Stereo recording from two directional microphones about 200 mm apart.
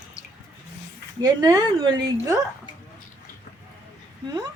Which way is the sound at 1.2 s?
20° right (ahead or behind).